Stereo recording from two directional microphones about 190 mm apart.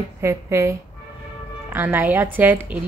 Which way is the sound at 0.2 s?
15° right (ahead or behind).